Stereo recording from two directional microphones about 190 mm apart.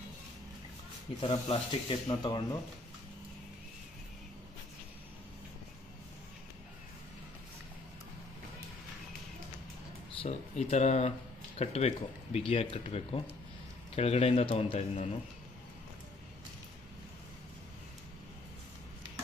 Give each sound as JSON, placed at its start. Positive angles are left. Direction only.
{"t": 1.2, "sound": "speech", "side_deg": 25}
{"t": 10.2, "sound": "speech", "side_deg": 35}